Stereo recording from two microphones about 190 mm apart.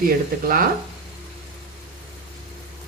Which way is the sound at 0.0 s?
45° right (ahead or behind).